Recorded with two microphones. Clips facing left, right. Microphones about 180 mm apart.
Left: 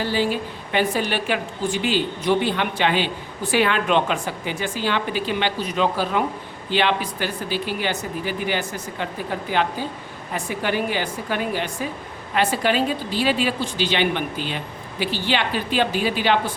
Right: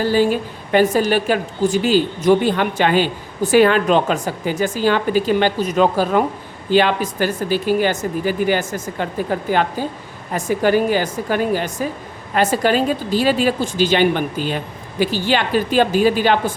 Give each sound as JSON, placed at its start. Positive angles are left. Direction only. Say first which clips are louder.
{"t": 0.0, "sound": "a woman's voice", "louder": "right 6 dB", "side_deg": -45}